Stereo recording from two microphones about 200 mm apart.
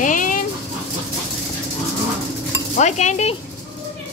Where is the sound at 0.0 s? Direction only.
40° left (ahead or behind).